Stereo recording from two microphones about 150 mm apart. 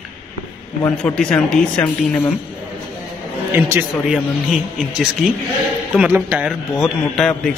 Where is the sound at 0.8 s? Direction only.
5° left (ahead or behind).